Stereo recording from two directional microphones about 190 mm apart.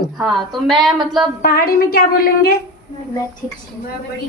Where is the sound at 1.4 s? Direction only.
50° left (ahead or behind).